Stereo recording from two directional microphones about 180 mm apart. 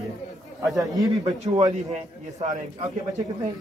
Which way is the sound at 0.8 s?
20° right (ahead or behind).